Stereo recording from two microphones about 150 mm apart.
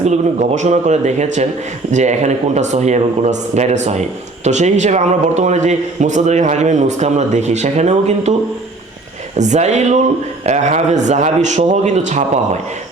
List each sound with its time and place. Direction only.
0.0 s a man's voice: 50° right (ahead or behind)
9.4 s a man's voice: 50° right (ahead or behind)